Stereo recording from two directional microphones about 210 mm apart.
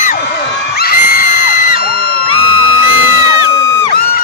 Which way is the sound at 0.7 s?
45° left (ahead or behind).